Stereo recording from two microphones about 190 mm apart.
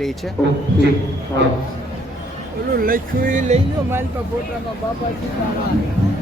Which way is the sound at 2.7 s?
45° right (ahead or behind).